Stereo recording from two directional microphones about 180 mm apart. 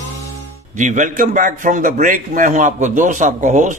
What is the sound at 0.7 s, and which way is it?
A man's voice, 45° right (ahead or behind).